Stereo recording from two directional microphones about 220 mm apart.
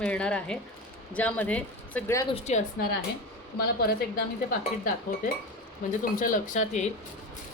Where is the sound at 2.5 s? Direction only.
30° left (ahead or behind).